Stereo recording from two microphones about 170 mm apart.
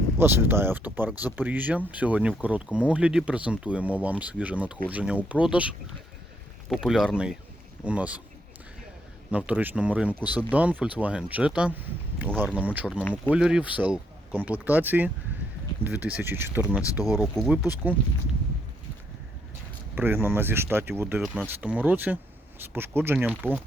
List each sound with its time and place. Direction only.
0.2 s speech: 15° right (ahead or behind)
9.5 s speech: 10° right (ahead or behind)
16.8 s speech: 20° left (ahead or behind)
17.2 s speech: centre (ahead or behind)
20.0 s speech: 15° right (ahead or behind)